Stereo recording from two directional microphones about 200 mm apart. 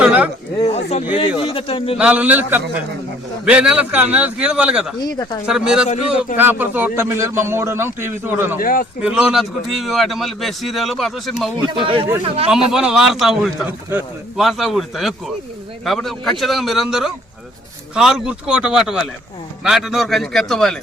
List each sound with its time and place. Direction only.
0.0 s chatter: 5° right (ahead or behind)
0.7 s a man's voice: 35° left (ahead or behind)
2.0 s a man's voice: 5° right (ahead or behind)
4.9 s a man's voice: 20° left (ahead or behind)
5.5 s a man's voice: 5° right (ahead or behind)
5.9 s speech: 35° left (ahead or behind)
6.3 s a man's voice: 10° right (ahead or behind)
8.6 s speech: 45° left (ahead or behind)
9.0 s a man's voice: 5° right (ahead or behind)
11.7 s speech: 25° right (ahead or behind)
12.7 s a man's voice: 5° right (ahead or behind)